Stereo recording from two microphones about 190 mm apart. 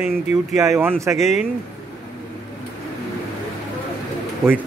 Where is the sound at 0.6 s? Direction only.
15° right (ahead or behind).